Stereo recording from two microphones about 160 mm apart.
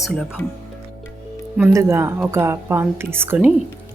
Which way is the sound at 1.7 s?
15° right (ahead or behind).